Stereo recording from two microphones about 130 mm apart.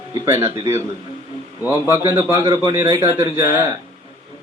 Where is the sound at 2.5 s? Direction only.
30° right (ahead or behind).